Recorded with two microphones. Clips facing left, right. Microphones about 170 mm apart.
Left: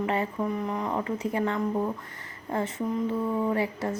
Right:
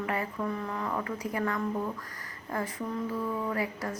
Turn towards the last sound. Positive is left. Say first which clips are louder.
# left 5 dB
turn(degrees=25)  # may be behind; listen again after turning